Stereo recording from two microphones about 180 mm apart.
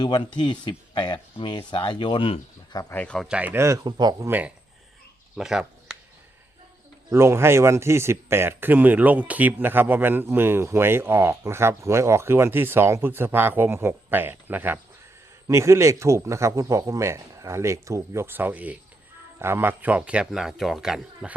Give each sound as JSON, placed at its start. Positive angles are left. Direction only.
{"t": 0.0, "sound": "speech", "side_deg": 25}
{"t": 2.9, "sound": "speech", "side_deg": 5}
{"t": 3.2, "sound": "speech", "side_deg": -10}
{"t": 4.3, "sound": "speech", "side_deg": -10}
{"t": 5.4, "sound": "a sound", "side_deg": -5}
{"t": 7.1, "sound": "speech", "side_deg": -15}